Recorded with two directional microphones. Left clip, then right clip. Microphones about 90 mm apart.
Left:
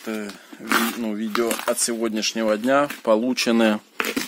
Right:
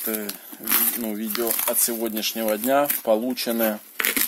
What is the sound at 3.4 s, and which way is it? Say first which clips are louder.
Speech: left 5 dB; 75° left (ahead or behind).